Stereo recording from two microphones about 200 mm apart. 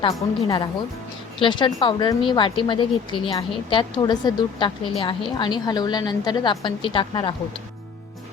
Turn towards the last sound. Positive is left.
turn(degrees=25)  # may be behind; listen again after turning